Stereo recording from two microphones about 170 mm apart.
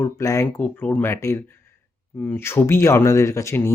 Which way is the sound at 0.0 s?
20° left (ahead or behind).